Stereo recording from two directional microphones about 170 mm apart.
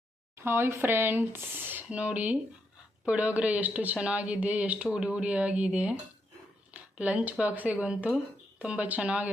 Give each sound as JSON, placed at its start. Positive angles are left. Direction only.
{"t": 0.4, "sound": "speech", "side_deg": -15}